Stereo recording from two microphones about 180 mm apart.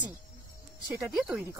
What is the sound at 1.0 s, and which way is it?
Speech, 5° right (ahead or behind).